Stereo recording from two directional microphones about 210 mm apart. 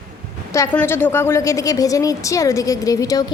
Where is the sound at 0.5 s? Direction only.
10° left (ahead or behind).